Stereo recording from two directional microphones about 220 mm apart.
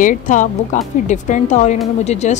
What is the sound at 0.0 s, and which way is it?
A woman's voice, 35° left (ahead or behind).